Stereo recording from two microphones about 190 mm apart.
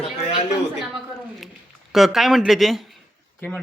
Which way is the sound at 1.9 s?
Centre (ahead or behind).